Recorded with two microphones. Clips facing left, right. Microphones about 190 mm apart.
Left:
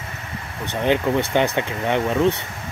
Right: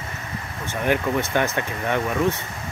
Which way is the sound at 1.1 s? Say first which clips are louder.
Left 3 dB; 20° left (ahead or behind).